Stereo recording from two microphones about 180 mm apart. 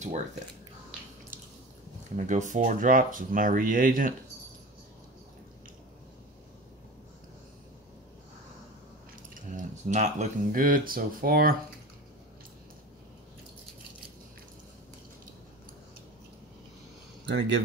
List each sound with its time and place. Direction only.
2.1 s speech: 45° right (ahead or behind)
9.3 s speech: 45° right (ahead or behind)
17.3 s speech: 75° right (ahead or behind)